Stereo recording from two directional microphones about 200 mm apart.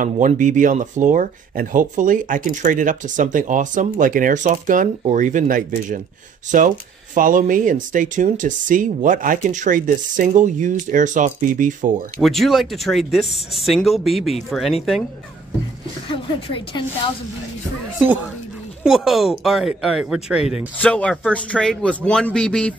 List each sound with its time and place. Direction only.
0.0 s speech: 40° right (ahead or behind)
12.2 s a man's voice: centre (ahead or behind)
16.1 s a woman's voice: 25° left (ahead or behind)
17.9 s a man's voice: 10° right (ahead or behind)